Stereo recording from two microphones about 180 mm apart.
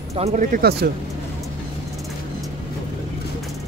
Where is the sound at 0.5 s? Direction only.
55° right (ahead or behind).